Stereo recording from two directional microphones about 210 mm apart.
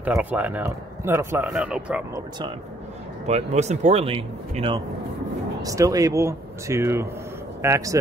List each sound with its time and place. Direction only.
0.0 s speech: 10° right (ahead or behind)
3.3 s speech: 30° right (ahead or behind); by 8.0 s 15° right (ahead or behind)